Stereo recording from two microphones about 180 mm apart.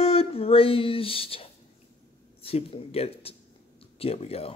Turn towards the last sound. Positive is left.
turn(degrees=35)  # may be behind; listen again after turning